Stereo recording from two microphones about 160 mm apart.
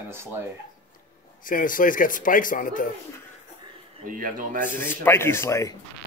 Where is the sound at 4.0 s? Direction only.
60° right (ahead or behind).